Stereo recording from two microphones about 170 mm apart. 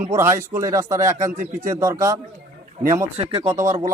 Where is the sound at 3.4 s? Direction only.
20° right (ahead or behind).